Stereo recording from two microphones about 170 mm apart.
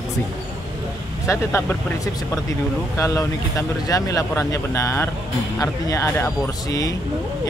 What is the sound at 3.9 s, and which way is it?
Speech, 20° left (ahead or behind).